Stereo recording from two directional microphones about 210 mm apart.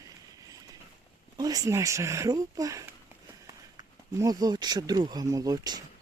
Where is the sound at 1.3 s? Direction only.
15° right (ahead or behind).